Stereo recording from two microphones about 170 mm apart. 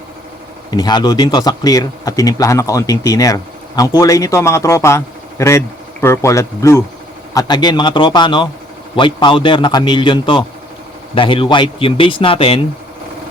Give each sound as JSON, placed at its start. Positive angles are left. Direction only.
{"t": 0.7, "sound": "speech", "side_deg": 25}